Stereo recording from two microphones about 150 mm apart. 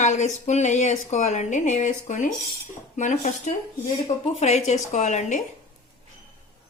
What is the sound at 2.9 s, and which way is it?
Cutlery, 55° left (ahead or behind).